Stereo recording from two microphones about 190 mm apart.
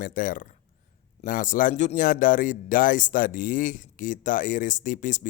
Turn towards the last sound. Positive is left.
turn(degrees=40)  # may be behind; listen again after turning